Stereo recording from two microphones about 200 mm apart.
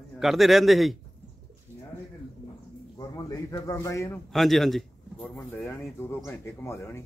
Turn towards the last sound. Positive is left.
turn(degrees=15)  # may be behind; listen again after turning